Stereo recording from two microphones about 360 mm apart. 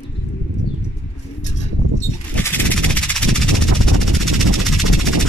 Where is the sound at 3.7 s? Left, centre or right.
Right.